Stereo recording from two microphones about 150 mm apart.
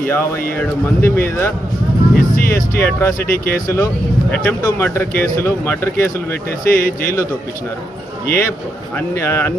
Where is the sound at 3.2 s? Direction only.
80° left.